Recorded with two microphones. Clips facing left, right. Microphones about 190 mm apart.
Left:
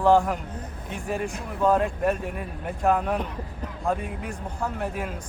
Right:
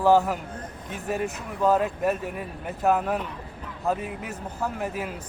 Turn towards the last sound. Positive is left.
turn(degrees=-5)  # may be behind; listen again after turning